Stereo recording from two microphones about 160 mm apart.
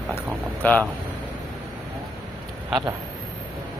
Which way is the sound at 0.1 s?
10° left (ahead or behind).